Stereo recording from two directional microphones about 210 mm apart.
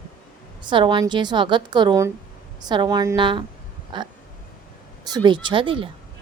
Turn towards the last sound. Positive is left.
turn(degrees=-25)  # may be behind; listen again after turning